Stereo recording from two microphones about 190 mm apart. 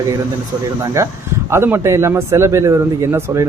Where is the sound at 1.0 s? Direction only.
15° right (ahead or behind).